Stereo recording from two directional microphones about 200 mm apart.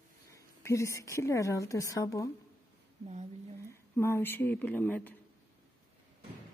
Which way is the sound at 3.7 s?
10° left (ahead or behind).